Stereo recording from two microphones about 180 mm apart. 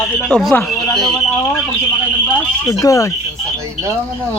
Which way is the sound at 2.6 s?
20° left (ahead or behind).